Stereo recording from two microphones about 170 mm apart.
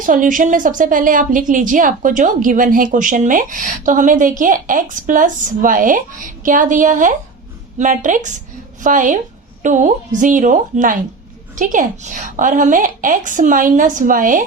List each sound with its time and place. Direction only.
0.0 s a woman's voice: 50° right (ahead or behind)